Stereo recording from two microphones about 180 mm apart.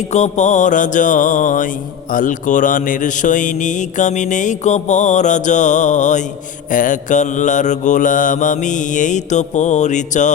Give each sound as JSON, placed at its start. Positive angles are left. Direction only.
{"t": 0.1, "sound": "speech", "side_deg": 40}